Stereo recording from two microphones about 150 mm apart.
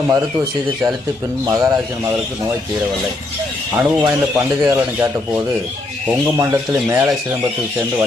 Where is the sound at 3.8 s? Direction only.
15° right (ahead or behind).